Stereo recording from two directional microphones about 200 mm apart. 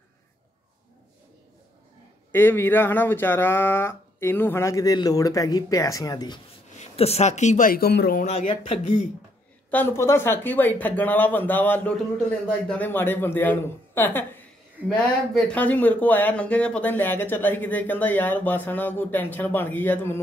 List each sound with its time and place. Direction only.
2.3 s speech: 10° left (ahead or behind)
6.8 s speech: 30° left (ahead or behind); by 8.2 s 50° left (ahead or behind)
8.2 s speech: 30° left (ahead or behind)
9.7 s speech: 10° left (ahead or behind)
15.3 s speech: 5° left (ahead or behind)